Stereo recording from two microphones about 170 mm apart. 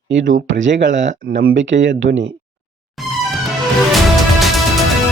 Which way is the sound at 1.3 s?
75° right (ahead or behind).